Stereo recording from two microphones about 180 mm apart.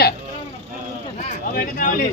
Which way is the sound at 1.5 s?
50° left (ahead or behind).